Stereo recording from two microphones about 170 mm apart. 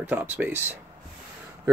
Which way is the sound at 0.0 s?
10° right (ahead or behind).